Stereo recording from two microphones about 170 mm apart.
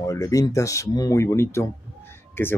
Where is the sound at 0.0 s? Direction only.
20° left (ahead or behind).